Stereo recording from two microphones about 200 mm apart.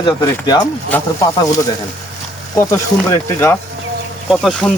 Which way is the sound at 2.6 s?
15° left (ahead or behind).